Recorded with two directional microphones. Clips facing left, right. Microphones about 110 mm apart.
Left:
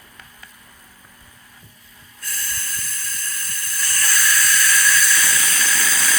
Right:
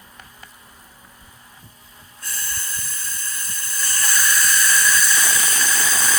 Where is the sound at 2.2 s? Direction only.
20° right (ahead or behind).